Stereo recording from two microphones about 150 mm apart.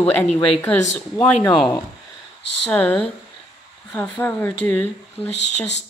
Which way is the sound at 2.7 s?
10° left (ahead or behind).